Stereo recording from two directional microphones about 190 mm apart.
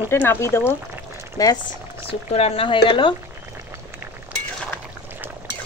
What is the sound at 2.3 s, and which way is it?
Speech, 30° left (ahead or behind).